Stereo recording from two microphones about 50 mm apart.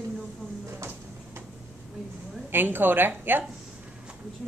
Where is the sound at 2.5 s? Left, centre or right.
Right.